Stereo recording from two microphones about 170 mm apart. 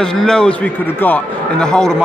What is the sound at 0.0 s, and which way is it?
A man's voice, 5° left (ahead or behind).